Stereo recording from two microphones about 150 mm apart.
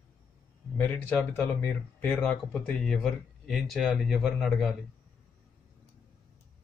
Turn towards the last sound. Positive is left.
turn(degrees=0)  # may be behind; listen again after turning